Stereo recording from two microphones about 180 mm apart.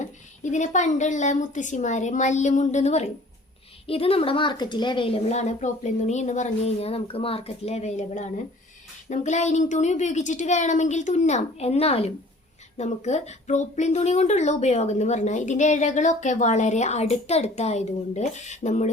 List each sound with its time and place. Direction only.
0.5 s a woman's voice: 40° left (ahead or behind)